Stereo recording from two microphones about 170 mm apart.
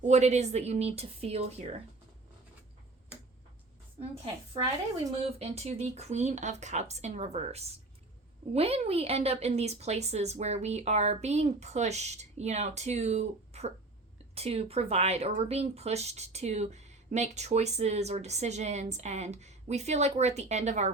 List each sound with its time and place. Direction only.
0.0 s speech: 40° right (ahead or behind)
5.2 s speech: 40° right (ahead or behind)